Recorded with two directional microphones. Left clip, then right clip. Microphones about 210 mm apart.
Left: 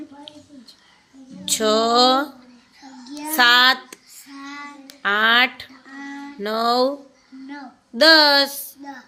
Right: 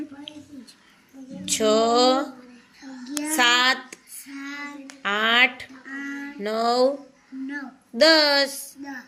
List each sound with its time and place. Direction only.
1.5 s speech: 30° left (ahead or behind)
3.3 s child singing: 30° left (ahead or behind)
5.0 s a sound: 30° left (ahead or behind)
6.4 s music: 30° left (ahead or behind)
7.9 s a sound: 30° left (ahead or behind)
8.8 s music: 5° left (ahead or behind)